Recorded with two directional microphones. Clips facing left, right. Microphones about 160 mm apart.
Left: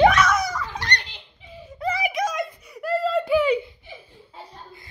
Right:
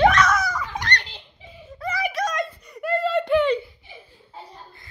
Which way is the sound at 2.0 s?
10° left (ahead or behind).